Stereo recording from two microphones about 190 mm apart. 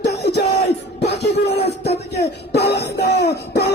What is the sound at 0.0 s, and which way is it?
Music, 60° left (ahead or behind).